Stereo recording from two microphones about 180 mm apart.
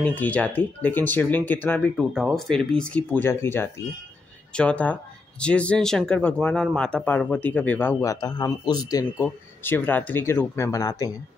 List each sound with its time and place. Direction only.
0.0 s speech: 10° left (ahead or behind)